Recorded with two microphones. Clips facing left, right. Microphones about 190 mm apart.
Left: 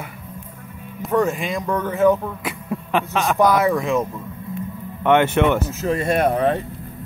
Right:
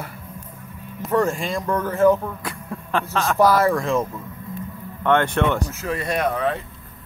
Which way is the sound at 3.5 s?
Centre (ahead or behind).